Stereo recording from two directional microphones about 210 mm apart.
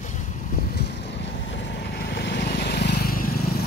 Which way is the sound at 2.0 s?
55° left (ahead or behind).